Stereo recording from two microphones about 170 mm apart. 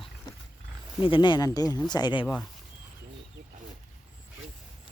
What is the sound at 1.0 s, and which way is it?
Speech, 30° left (ahead or behind).